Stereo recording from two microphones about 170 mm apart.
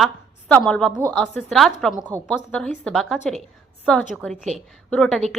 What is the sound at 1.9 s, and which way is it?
Speech, 25° right (ahead or behind).